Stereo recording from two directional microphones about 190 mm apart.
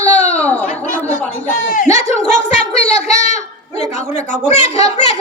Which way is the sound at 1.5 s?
45° left (ahead or behind).